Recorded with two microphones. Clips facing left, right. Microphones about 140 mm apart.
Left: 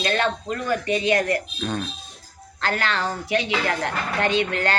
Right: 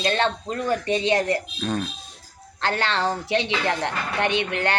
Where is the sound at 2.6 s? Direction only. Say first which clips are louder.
Right 1 dB; 25° right (ahead or behind).